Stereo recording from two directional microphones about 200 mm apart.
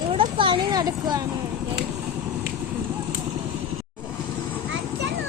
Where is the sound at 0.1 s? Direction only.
25° right (ahead or behind).